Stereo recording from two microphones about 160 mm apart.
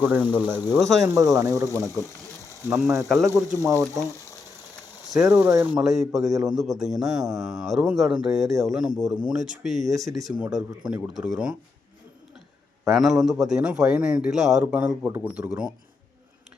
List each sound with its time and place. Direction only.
0.0 s speech: 10° right (ahead or behind)
0.4 s speech: 25° left (ahead or behind)
0.8 s a man's voice: centre (ahead or behind)
1.0 s speech: 20° right (ahead or behind)
3.9 s frying: 20° left (ahead or behind)
5.2 s speech: 15° right (ahead or behind)
6.2 s speech: 20° right (ahead or behind)
6.5 s a man's voice: centre (ahead or behind)
12.9 s a man's voice: centre (ahead or behind)